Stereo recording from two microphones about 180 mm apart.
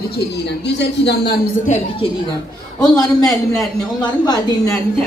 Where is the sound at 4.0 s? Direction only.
20° left (ahead or behind).